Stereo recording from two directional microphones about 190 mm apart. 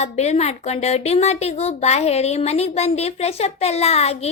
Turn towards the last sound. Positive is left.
turn(degrees=35)  # may be behind; listen again after turning